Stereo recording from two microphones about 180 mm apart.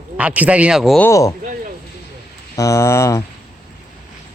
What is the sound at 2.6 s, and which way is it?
Speech, 15° left (ahead or behind).